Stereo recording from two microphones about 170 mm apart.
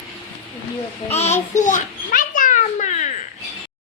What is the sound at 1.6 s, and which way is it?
Children playing, 50° left (ahead or behind).